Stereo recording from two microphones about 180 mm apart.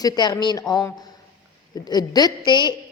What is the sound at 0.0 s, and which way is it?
A woman's voice, 20° left (ahead or behind).